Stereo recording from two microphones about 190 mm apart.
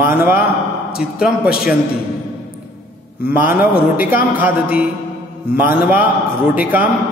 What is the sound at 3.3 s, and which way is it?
A man's voice, 10° right (ahead or behind).